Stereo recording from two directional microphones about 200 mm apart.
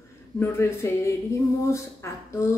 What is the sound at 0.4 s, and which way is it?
A woman's voice, 15° left (ahead or behind).